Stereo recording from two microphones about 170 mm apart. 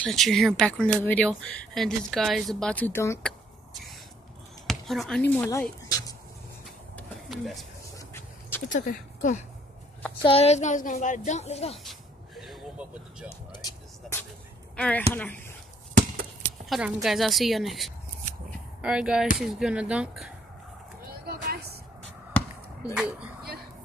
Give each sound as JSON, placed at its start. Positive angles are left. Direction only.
{"t": 0.0, "sound": "speech", "side_deg": 0}
{"t": 4.6, "sound": "a sound", "side_deg": 0}
{"t": 5.2, "sound": "speech", "side_deg": 10}
{"t": 7.2, "sound": "speech", "side_deg": 0}
{"t": 8.1, "sound": "a sound", "side_deg": 15}
{"t": 8.6, "sound": "speech", "side_deg": 50}
{"t": 10.2, "sound": "speech", "side_deg": 35}
{"t": 11.8, "sound": "vehicle", "side_deg": 0}
{"t": 13.5, "sound": "vehicle", "side_deg": 20}
{"t": 14.8, "sound": "speech", "side_deg": 10}
{"t": 16.6, "sound": "speech", "side_deg": 0}
{"t": 21.3, "sound": "a sound", "side_deg": -65}
{"t": 22.3, "sound": "basketball bounce", "side_deg": 5}